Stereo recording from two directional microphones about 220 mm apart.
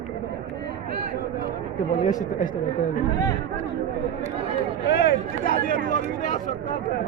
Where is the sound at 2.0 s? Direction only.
35° left (ahead or behind).